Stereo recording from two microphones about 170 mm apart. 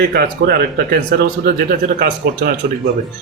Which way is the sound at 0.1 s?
65° right (ahead or behind).